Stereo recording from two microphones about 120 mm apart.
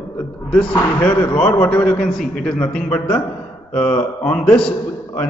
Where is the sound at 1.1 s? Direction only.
45° left (ahead or behind).